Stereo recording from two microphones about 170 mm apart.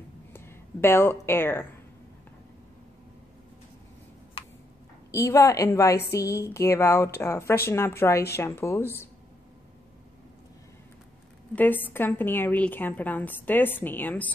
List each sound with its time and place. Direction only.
0.3 s speech: 15° left (ahead or behind)
5.1 s a woman's voice: 20° left (ahead or behind)
11.5 s a woman's voice: 10° left (ahead or behind)